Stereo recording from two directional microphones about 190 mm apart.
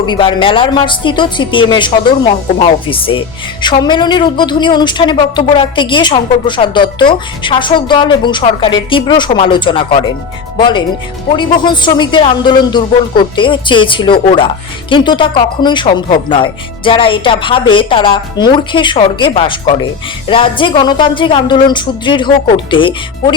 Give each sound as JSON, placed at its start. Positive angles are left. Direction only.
{"t": 0.0, "sound": "speech", "side_deg": 25}